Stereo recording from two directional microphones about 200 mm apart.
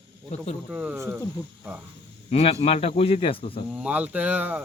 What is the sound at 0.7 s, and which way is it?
Speech, 5° right (ahead or behind).